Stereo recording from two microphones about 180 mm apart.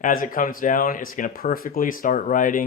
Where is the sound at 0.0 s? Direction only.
50° left (ahead or behind).